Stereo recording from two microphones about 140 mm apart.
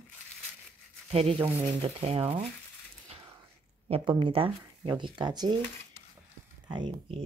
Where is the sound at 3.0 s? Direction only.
45° right (ahead or behind).